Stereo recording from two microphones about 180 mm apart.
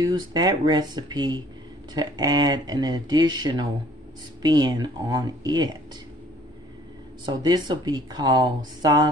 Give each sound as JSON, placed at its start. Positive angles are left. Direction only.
{"t": 0.0, "sound": "speech", "side_deg": -25}
{"t": 7.2, "sound": "speech", "side_deg": -25}